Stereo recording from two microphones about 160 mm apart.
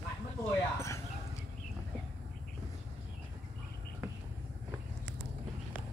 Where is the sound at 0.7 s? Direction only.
15° left (ahead or behind).